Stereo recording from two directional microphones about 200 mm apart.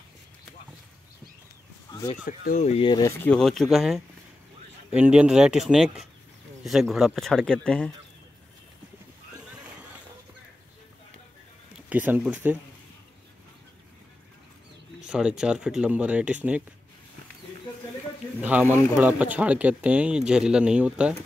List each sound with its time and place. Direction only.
1.9 s a sound: 15° left (ahead or behind)
2.2 s speech: 40° left (ahead or behind); by 7.9 s 5° left (ahead or behind)
11.9 s speech: 10° right (ahead or behind)
15.0 s speech: 5° right (ahead or behind)
18.4 s speech: 10° right (ahead or behind)